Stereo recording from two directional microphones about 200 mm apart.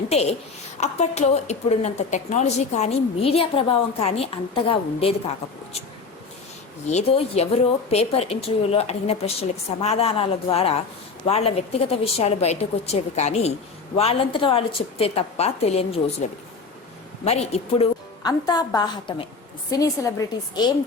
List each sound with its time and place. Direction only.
0.1 s a woman's voice: 30° left (ahead or behind)
6.8 s a woman's voice: 35° left (ahead or behind); by 20.7 s 15° left (ahead or behind)